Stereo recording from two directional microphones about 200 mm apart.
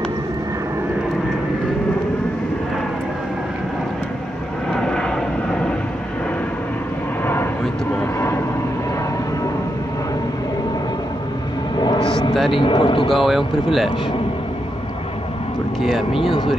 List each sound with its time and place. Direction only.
4.7 s vehicle: 5° left (ahead or behind)
8.0 s vehicle: 10° left (ahead or behind)
11.8 s vehicle: 25° left (ahead or behind)
12.5 s speech: 25° left (ahead or behind)
13.1 s speech: centre (ahead or behind)
16.1 s speech: 25° left (ahead or behind)